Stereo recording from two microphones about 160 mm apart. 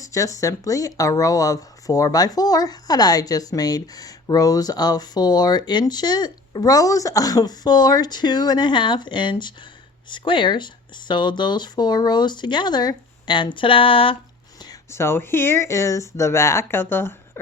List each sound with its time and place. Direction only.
0.0 s speech: 20° left (ahead or behind)
14.6 s speech: 20° left (ahead or behind)